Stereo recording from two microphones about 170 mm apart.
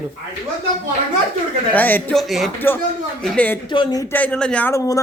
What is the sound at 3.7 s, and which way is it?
Speech, 25° left (ahead or behind).